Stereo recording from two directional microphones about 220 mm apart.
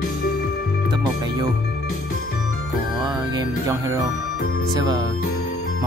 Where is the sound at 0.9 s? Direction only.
20° right (ahead or behind).